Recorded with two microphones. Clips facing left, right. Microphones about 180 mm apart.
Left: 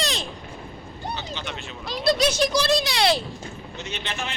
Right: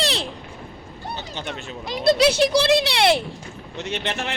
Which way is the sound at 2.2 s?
30° right (ahead or behind).